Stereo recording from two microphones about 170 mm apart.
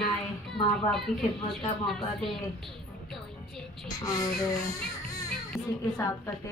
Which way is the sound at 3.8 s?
20° left (ahead or behind).